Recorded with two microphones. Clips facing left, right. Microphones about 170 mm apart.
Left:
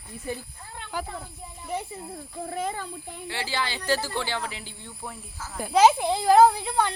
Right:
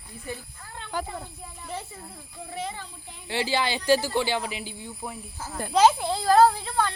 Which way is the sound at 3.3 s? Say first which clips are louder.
Right 5 dB; 15° right (ahead or behind).